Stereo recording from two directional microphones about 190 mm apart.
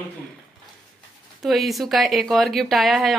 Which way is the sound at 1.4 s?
Centre (ahead or behind).